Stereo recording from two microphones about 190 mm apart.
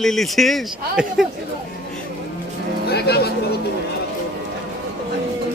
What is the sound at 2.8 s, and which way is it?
Speech, 60° left (ahead or behind).